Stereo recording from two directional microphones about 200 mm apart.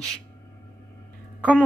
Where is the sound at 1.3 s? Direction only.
5° left (ahead or behind).